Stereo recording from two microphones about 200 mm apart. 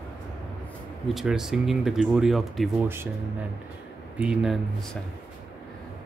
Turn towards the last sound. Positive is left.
turn(degrees=0)  # may be behind; listen again after turning